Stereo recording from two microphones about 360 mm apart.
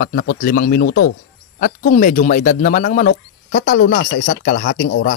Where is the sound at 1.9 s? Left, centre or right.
Left.